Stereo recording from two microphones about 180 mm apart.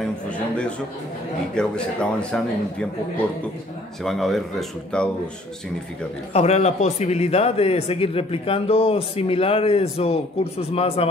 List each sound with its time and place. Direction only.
1.5 s speech: 5° left (ahead or behind)
4.0 s speech: centre (ahead or behind)
6.3 s a man's voice: 35° left (ahead or behind)